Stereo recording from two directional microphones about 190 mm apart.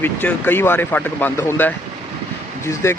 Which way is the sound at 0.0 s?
10° left (ahead or behind).